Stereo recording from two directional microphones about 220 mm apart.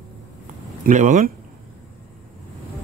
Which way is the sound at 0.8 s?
35° right (ahead or behind).